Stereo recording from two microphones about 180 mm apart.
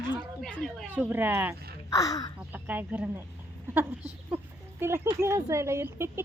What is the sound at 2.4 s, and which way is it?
Speech, 10° right (ahead or behind).